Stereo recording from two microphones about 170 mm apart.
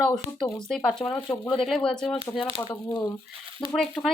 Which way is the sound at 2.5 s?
25° left (ahead or behind).